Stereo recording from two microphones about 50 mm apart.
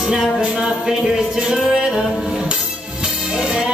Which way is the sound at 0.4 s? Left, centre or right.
Centre.